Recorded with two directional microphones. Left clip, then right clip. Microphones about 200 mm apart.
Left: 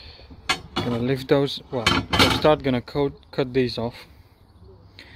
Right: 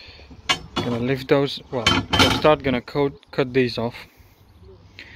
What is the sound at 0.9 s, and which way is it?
Speech, 15° left (ahead or behind).